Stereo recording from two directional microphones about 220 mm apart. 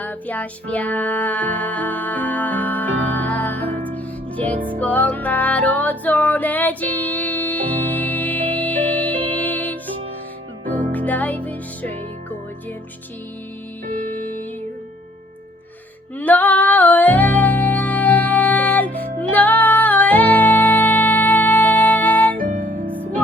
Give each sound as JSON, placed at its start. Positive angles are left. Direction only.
{"t": 0.0, "sound": "music", "side_deg": 5}
{"t": 10.7, "sound": "music", "side_deg": -35}
{"t": 10.9, "sound": "music", "side_deg": 5}
{"t": 14.2, "sound": "music", "side_deg": 10}
{"t": 16.1, "sound": "music", "side_deg": 10}
{"t": 22.4, "sound": "music", "side_deg": -35}